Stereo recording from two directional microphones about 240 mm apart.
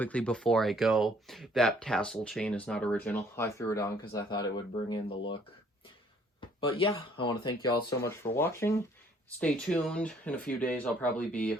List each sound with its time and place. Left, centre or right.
0.0 s speech: centre; by 5.4 s left
6.4 s speech: left